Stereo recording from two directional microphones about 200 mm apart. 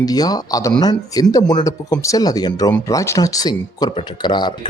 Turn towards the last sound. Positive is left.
turn(degrees=20)  # may be behind; listen again after turning